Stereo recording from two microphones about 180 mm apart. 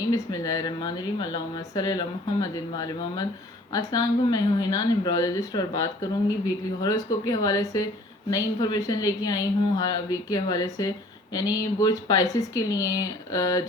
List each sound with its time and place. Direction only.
0.1 s a woman's voice: 20° left (ahead or behind)